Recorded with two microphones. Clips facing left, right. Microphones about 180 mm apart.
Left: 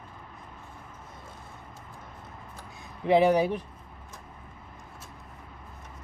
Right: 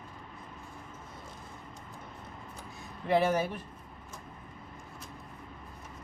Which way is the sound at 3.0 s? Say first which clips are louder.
Left 6 dB; 15° left (ahead or behind).